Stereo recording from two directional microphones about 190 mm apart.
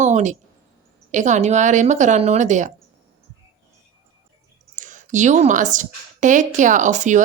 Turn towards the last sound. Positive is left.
turn(degrees=-40)  # may be behind; listen again after turning